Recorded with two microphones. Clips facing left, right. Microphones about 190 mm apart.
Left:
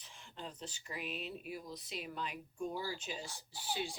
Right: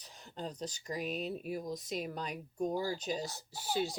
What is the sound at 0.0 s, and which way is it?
Speech, 40° right (ahead or behind).